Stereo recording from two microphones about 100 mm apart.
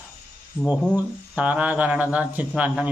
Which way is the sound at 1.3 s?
15° right (ahead or behind).